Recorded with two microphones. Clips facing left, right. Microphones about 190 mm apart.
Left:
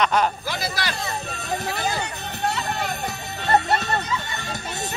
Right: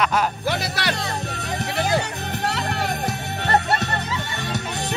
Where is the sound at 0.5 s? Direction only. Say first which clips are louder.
Right 4 dB; 70° right (ahead or behind).